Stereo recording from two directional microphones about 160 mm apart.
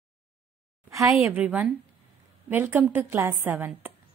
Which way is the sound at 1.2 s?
10° right (ahead or behind).